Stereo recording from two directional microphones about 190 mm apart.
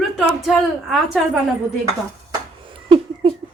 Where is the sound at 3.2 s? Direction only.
25° right (ahead or behind).